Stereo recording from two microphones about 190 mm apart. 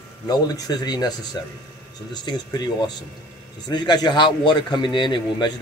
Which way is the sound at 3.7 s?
20° left (ahead or behind).